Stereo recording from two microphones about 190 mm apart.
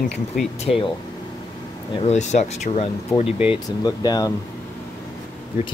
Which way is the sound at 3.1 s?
20° left (ahead or behind).